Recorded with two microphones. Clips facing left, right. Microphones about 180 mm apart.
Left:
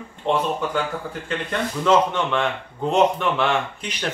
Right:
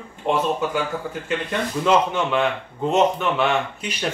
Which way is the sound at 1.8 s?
5° right (ahead or behind).